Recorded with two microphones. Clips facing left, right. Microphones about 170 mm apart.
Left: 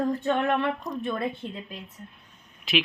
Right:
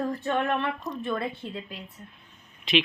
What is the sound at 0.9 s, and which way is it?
Speech, centre (ahead or behind).